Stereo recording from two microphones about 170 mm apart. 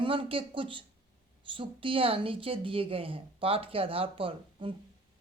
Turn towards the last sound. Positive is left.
turn(degrees=-30)  # may be behind; listen again after turning